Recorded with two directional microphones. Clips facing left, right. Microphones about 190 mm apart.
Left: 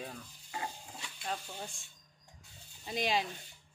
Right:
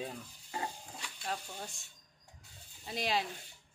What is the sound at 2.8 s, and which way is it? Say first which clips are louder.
Speech: left 2 dB; centre (ahead or behind).